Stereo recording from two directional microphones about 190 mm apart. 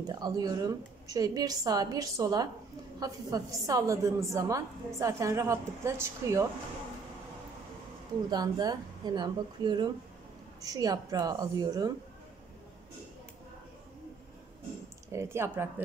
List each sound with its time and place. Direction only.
0.0 s a woman's voice: 20° right (ahead or behind)
8.3 s a woman's voice: 20° right (ahead or behind)
15.0 s a woman's voice: 15° right (ahead or behind)